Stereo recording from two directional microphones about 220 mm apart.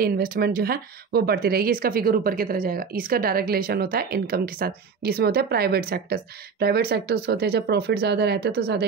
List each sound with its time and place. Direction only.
0.0 s speech: 40° right (ahead or behind)